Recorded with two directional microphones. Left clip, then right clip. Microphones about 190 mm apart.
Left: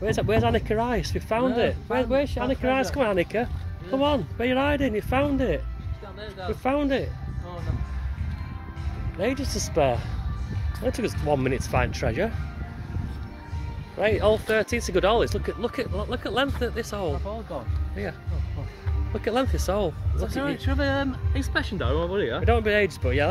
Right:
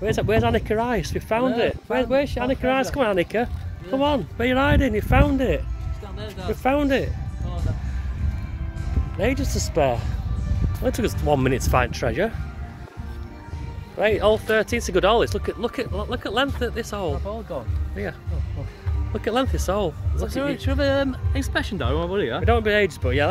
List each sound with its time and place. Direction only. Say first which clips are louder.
0.0 s speech: right 2 dB; centre (ahead or behind)
9.2 s speech: right 3 dB; centre (ahead or behind)
10.8 s speech: right 3 dB; 5° right (ahead or behind)
13.9 s speech: right 3 dB; 10° right (ahead or behind)
19.1 s speech: right 2 dB; 5° right (ahead or behind)
20.2 s speech: right 3 dB; 45° right (ahead or behind); by 22.4 s 60° right (ahead or behind)
22.4 s speech: right 3 dB; 5° right (ahead or behind)